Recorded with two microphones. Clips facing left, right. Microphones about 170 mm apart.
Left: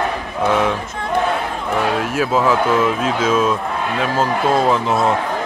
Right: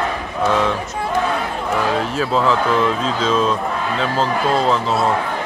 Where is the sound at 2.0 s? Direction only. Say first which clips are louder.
Left 1 dB; 10° left (ahead or behind).